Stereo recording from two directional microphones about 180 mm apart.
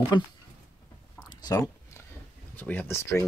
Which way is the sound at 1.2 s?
25° left (ahead or behind).